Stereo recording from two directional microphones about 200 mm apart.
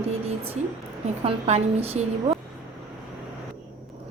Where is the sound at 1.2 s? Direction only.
30° right (ahead or behind).